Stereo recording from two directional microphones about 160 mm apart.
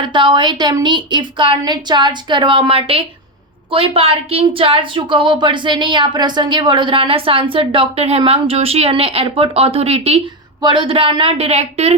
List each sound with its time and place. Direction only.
0.0 s a woman's voice: 30° right (ahead or behind)